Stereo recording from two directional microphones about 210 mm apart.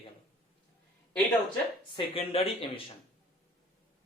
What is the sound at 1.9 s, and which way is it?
Speech, 25° left (ahead or behind).